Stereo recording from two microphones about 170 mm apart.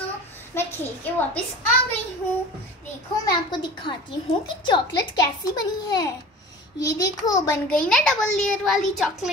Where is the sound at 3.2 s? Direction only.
25° left (ahead or behind).